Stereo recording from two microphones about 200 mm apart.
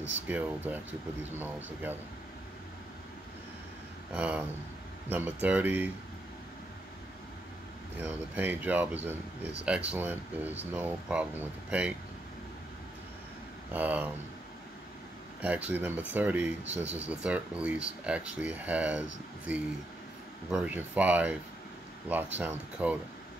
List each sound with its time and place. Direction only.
0.3 s speech: 10° right (ahead or behind)
4.1 s speech: 5° right (ahead or behind)
8.0 s speech: 10° right (ahead or behind)
13.7 s speech: 10° right (ahead or behind)
15.4 s speech: 10° right (ahead or behind)